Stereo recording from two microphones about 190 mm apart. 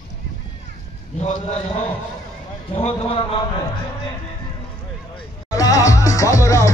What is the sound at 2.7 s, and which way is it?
Speech, 35° left (ahead or behind).